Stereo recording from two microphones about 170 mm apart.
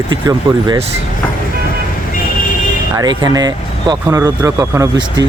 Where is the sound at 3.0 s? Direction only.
20° right (ahead or behind).